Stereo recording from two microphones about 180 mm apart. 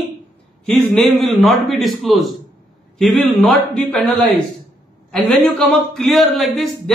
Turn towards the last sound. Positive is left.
turn(degrees=0)  # may be behind; listen again after turning